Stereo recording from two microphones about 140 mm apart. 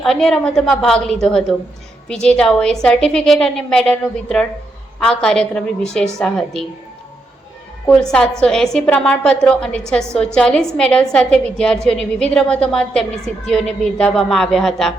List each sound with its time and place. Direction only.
0.0 s a woman's voice: centre (ahead or behind)
7.9 s a woman's voice: 5° left (ahead or behind)